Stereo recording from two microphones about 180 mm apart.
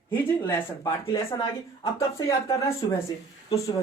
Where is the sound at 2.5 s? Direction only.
20° left (ahead or behind).